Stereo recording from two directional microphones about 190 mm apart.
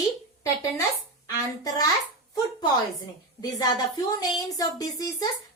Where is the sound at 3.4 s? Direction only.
20° left (ahead or behind).